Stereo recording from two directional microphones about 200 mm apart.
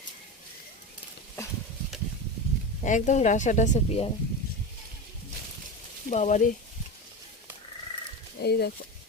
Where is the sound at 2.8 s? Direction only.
40° left (ahead or behind).